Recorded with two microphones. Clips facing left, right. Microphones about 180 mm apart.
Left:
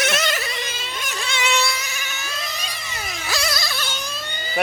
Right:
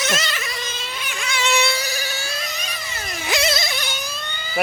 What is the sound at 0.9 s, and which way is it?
Cat, 40° left (ahead or behind).